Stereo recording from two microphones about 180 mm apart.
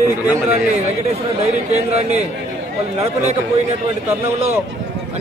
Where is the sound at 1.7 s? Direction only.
40° right (ahead or behind).